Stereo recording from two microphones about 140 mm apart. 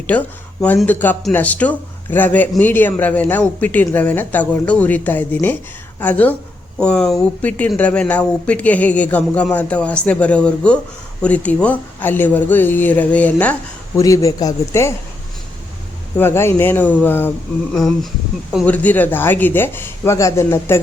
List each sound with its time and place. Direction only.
0.1 s a man's voice: 10° left (ahead or behind)
13.9 s speech: 25° left (ahead or behind)
16.1 s a man's voice: 15° left (ahead or behind)
17.7 s a man's voice: 5° left (ahead or behind); by 20.8 s 20° left (ahead or behind)